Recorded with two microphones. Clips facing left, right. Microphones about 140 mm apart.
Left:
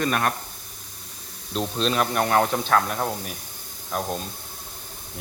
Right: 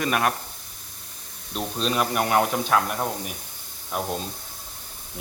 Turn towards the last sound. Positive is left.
turn(degrees=-10)  # may be behind; listen again after turning